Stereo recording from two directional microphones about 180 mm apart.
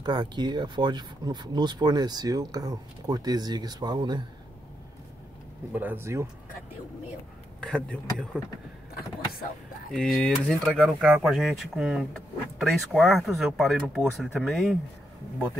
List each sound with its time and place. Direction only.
0.0 s speech: 25° right (ahead or behind)
5.7 s speech: 10° right (ahead or behind)
7.6 s speech: 5° left (ahead or behind)
9.9 s speech: centre (ahead or behind)